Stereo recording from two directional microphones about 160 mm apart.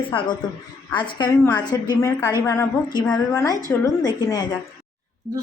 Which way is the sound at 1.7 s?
25° left (ahead or behind).